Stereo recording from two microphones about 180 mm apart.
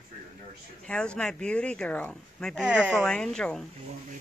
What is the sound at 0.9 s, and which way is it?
Speech, 5° left (ahead or behind).